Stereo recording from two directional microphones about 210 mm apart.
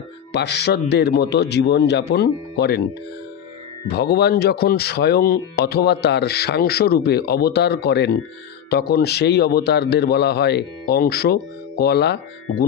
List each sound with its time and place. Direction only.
0.3 s speech: 50° left (ahead or behind)
3.9 s speech: 50° left (ahead or behind)